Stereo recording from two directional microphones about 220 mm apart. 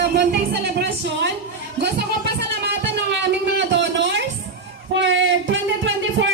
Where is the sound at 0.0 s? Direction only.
50° right (ahead or behind).